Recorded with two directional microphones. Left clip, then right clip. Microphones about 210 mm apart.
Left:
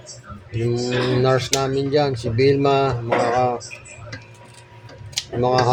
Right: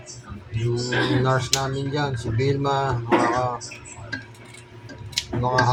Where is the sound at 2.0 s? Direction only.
45° left (ahead or behind).